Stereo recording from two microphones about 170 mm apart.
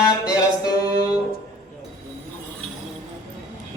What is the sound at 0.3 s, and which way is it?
Music, 20° left (ahead or behind).